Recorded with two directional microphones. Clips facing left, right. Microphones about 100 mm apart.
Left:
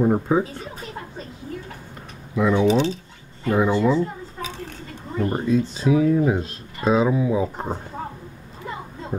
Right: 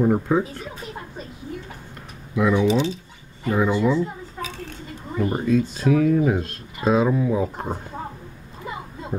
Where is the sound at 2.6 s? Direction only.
35° left (ahead or behind).